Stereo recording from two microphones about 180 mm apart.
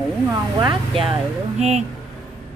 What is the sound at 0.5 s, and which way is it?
Speech, 25° right (ahead or behind).